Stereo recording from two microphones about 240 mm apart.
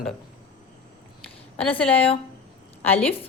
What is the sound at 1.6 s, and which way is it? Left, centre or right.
A woman's voice, centre.